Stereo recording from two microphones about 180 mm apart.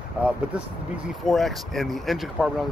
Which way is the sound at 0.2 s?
5° right (ahead or behind).